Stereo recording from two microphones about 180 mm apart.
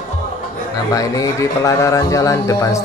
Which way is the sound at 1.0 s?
20° left (ahead or behind).